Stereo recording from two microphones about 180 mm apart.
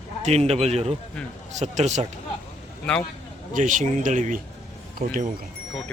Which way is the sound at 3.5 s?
45° right (ahead or behind).